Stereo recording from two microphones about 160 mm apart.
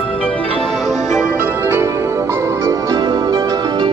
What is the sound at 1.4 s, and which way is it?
Music, 15° right (ahead or behind).